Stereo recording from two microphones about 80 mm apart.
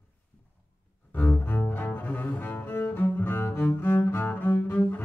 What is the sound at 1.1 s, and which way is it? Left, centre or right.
Cello, left.